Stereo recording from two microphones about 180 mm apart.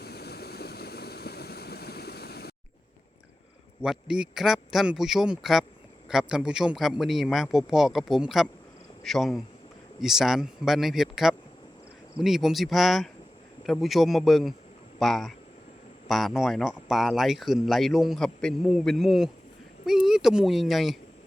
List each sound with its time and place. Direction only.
0.0 s vehicle: 60° left (ahead or behind)
3.8 s speech: 5° right (ahead or behind)